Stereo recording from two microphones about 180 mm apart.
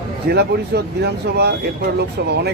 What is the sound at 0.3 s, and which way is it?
Speech, 65° right (ahead or behind).